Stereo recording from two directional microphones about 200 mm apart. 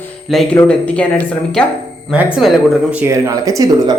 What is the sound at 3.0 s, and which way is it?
Speech, 15° right (ahead or behind).